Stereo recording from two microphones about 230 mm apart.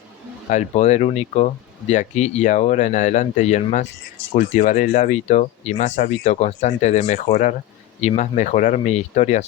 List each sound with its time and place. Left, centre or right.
0.5 s speech: left